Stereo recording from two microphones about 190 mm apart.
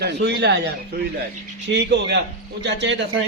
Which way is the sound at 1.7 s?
65° right (ahead or behind).